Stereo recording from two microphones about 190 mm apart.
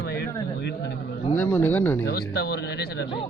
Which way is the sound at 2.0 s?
60° left (ahead or behind).